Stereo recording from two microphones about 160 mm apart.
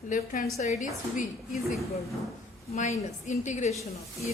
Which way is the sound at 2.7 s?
45° left (ahead or behind).